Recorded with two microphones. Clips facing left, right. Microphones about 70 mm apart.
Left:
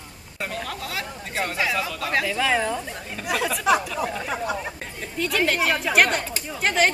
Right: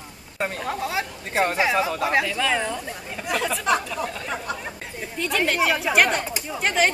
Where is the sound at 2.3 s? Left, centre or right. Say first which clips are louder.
Left 1 dB; centre.